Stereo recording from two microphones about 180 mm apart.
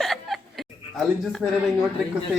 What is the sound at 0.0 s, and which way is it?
Chuckle, centre (ahead or behind).